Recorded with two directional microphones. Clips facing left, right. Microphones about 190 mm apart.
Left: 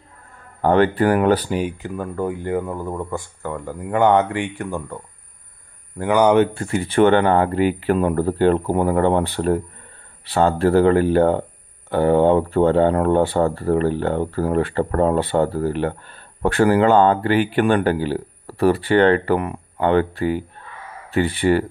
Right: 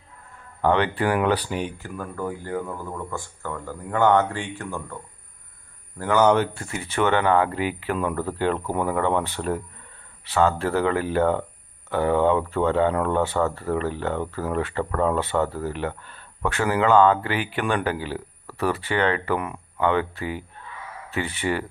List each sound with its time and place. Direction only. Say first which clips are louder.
0.6 s speech: left 5 dB; 45° left (ahead or behind)
1.8 s speech: left 6 dB; 20° left (ahead or behind)
5.9 s speech: left 4 dB; 15° left (ahead or behind)
6.7 s speech: left 7 dB; 35° left (ahead or behind)
7.5 s speech: left 8 dB; 50° left (ahead or behind)
7.9 s speech: left 7 dB; 35° left (ahead or behind)